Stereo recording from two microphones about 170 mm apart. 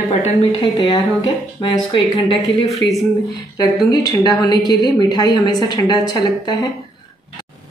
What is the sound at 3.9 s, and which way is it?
A woman's voice, 25° left (ahead or behind).